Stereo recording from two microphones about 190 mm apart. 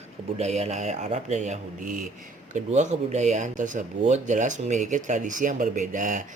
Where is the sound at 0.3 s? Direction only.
35° right (ahead or behind).